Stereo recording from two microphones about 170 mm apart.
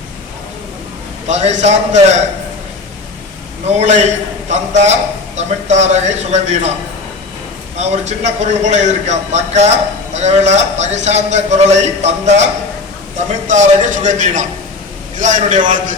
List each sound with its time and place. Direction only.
1.3 s a man's voice: 40° right (ahead or behind)
3.7 s a man's voice: 40° right (ahead or behind)
7.8 s a man's voice: 40° right (ahead or behind)
13.5 s a man's voice: 45° right (ahead or behind)